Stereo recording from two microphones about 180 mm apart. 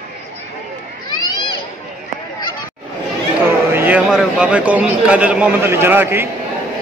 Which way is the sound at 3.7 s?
10° right (ahead or behind).